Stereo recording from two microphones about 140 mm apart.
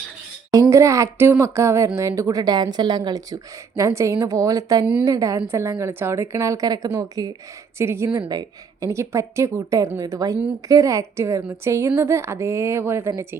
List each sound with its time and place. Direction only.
0.5 s speech: 20° right (ahead or behind)